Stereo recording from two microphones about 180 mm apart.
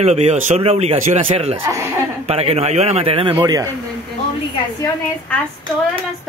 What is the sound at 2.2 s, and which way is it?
A man's voice, 35° right (ahead or behind).